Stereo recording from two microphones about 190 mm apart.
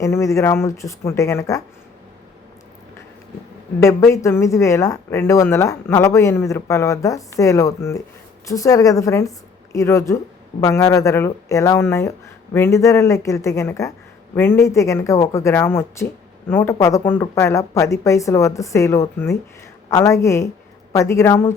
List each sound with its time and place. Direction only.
0.0 s speech: 15° left (ahead or behind)
3.8 s speech: 15° left (ahead or behind)